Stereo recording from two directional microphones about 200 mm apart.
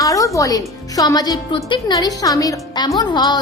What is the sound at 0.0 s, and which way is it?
Music, 15° left (ahead or behind).